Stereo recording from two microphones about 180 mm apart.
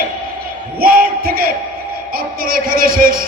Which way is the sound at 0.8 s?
55° right (ahead or behind).